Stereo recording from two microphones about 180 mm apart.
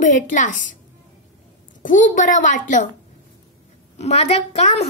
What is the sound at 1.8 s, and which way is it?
A woman's voice, 45° left (ahead or behind).